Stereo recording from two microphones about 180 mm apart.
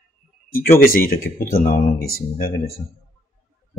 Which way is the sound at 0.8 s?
55° left (ahead or behind).